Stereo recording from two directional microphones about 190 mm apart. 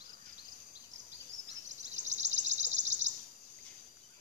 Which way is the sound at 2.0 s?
40° right (ahead or behind).